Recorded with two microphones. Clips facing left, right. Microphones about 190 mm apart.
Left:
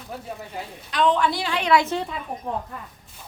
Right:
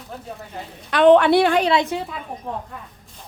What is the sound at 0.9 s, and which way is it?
Speech, 65° right (ahead or behind).